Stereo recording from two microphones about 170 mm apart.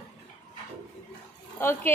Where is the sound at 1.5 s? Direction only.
15° left (ahead or behind).